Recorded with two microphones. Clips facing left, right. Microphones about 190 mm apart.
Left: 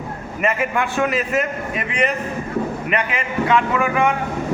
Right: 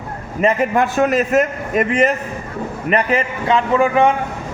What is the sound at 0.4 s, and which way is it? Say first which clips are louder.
A man's voice: right 5 dB; 40° right (ahead or behind).